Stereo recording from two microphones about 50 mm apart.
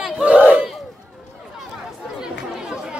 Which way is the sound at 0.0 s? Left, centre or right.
Right.